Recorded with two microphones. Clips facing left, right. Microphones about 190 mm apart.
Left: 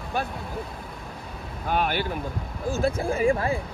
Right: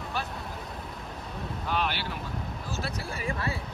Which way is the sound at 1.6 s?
50° left (ahead or behind).